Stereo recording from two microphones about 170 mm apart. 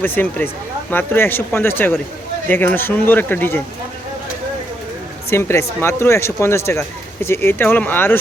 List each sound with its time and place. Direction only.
0.0 s speech: 10° left (ahead or behind)
5.3 s speech: 15° left (ahead or behind)